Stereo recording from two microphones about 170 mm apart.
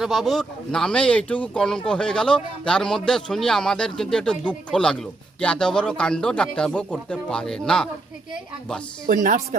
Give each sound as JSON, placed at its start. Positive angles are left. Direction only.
{"t": 0.0, "sound": "speech", "side_deg": 0}
{"t": 9.0, "sound": "speech", "side_deg": -55}